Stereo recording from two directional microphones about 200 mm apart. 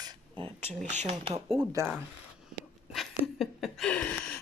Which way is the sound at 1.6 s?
15° right (ahead or behind).